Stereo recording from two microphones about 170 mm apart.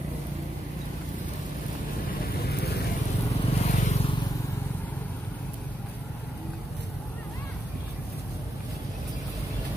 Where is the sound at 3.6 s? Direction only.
50° left (ahead or behind).